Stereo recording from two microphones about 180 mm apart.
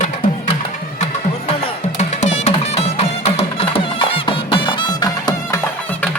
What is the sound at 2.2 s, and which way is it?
Music, 40° left (ahead or behind).